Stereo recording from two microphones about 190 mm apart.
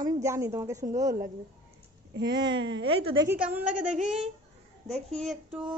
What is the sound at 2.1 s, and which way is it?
Speech, 65° right (ahead or behind).